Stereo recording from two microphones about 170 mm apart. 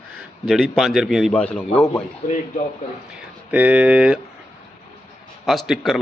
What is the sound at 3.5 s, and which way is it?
Speech, 10° right (ahead or behind).